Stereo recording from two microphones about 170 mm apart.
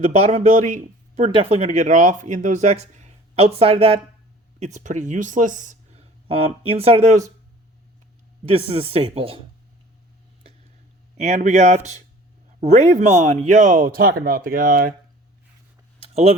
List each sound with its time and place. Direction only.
0.2 s speech: 40° right (ahead or behind)
4.6 s speech: 45° right (ahead or behind)
8.4 s speech: 35° right (ahead or behind)
11.2 s speech: 40° right (ahead or behind); by 14.9 s 55° right (ahead or behind)